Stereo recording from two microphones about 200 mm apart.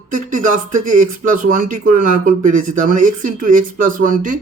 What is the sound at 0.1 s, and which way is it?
Speech, 40° right (ahead or behind).